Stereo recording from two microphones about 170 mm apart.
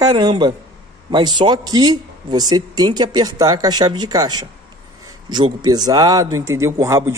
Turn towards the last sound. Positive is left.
turn(degrees=-15)  # may be behind; listen again after turning